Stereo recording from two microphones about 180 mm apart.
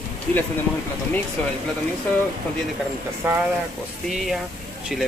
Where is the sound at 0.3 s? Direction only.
10° left (ahead or behind).